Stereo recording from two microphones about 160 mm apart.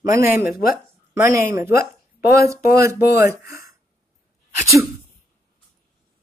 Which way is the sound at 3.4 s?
65° left (ahead or behind).